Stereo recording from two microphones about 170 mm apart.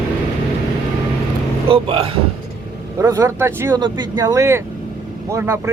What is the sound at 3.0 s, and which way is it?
Speech, 20° right (ahead or behind).